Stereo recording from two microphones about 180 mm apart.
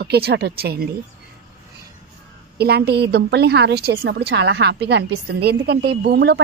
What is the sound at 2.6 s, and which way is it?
A woman's voice, 65° right (ahead or behind).